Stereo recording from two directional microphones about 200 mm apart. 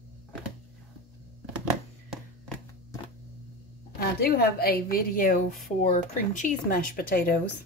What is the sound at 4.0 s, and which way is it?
Speech, 50° left (ahead or behind).